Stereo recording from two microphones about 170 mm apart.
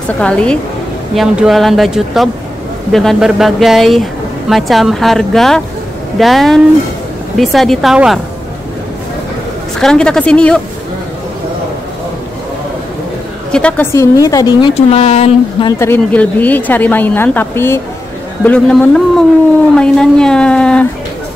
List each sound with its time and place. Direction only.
0.2 s speech: 5° left (ahead or behind)
9.8 s speech: 5° left (ahead or behind)
13.5 s a woman's voice: 5° left (ahead or behind)
14.2 s speech: 20° left (ahead or behind)
14.9 s speech: 40° left (ahead or behind)
15.8 s speech: 10° left (ahead or behind)
19.7 s a sound: 5° left (ahead or behind)